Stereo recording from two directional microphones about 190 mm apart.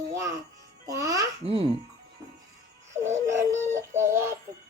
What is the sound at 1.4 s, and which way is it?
Speech, 30° right (ahead or behind).